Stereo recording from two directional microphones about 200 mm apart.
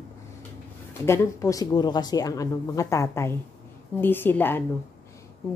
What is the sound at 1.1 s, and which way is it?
A woman's voice, 15° left (ahead or behind).